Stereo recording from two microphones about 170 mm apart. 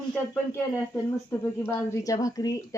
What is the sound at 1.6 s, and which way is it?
Speech, 15° left (ahead or behind).